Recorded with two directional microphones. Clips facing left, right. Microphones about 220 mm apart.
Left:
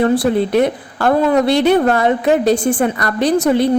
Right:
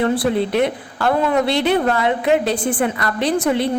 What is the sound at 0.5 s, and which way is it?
A woman's voice, 45° left (ahead or behind).